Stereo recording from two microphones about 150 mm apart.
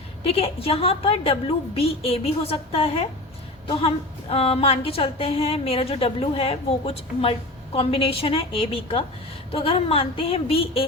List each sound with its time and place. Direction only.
0.3 s a woman's voice: 40° left (ahead or behind)